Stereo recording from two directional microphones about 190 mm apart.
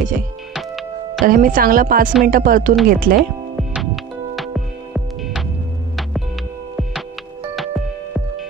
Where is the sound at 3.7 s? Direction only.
Centre (ahead or behind).